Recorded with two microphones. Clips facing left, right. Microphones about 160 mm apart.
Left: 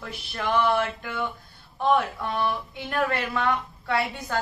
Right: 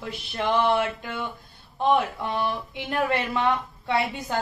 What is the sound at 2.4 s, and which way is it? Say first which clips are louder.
Speech: left 2 dB; 15° right (ahead or behind).